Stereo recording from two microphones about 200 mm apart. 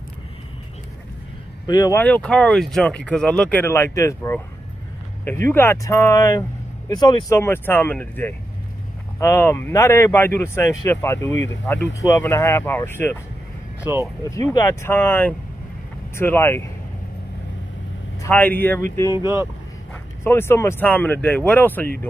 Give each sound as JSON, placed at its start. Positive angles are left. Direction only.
{"t": 1.7, "sound": "speech", "side_deg": 20}
{"t": 2.0, "sound": "speech", "side_deg": 10}
{"t": 13.9, "sound": "speech", "side_deg": -15}
{"t": 14.3, "sound": "speech", "side_deg": 15}
{"t": 18.2, "sound": "speech", "side_deg": 10}
{"t": 19.1, "sound": "speech", "side_deg": -15}
{"t": 20.2, "sound": "speech", "side_deg": 10}